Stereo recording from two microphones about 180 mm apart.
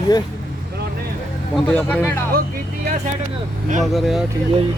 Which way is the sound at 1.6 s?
10° left (ahead or behind).